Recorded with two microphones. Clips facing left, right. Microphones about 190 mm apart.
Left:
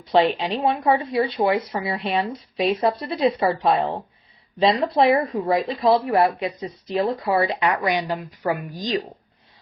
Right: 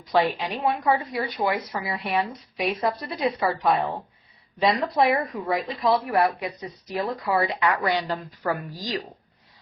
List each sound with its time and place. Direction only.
0.0 s speech: 25° left (ahead or behind)